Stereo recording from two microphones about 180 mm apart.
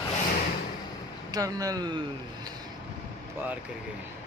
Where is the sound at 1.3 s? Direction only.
20° right (ahead or behind).